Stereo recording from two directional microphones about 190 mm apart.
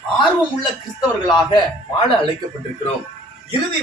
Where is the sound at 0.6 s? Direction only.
20° left (ahead or behind).